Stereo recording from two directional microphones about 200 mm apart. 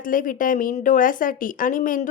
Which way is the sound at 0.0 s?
40° left (ahead or behind).